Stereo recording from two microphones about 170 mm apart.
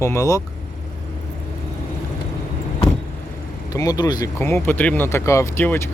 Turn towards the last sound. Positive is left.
turn(degrees=15)  # may be behind; listen again after turning